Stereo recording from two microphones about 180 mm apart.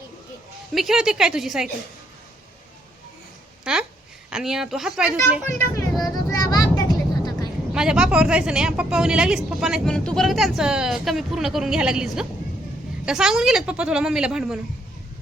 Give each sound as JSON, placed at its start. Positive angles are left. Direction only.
{"t": 0.7, "sound": "speech", "side_deg": 0}
{"t": 3.6, "sound": "a sound", "side_deg": -5}
{"t": 4.3, "sound": "speech", "side_deg": -5}
{"t": 5.5, "sound": "speech", "side_deg": 15}
{"t": 6.0, "sound": "vehicle", "side_deg": 20}
{"t": 7.7, "sound": "speech", "side_deg": -5}